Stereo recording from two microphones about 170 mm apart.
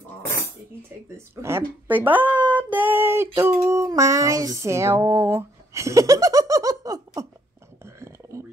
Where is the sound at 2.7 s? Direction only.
10° right (ahead or behind).